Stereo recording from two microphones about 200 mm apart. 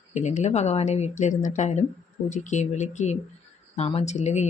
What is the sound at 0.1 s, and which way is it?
A woman's voice, 35° left (ahead or behind).